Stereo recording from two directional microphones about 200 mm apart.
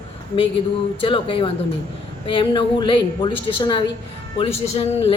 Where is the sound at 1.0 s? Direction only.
25° left (ahead or behind).